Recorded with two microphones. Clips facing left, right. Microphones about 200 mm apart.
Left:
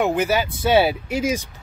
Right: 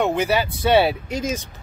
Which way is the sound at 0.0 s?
5° left (ahead or behind).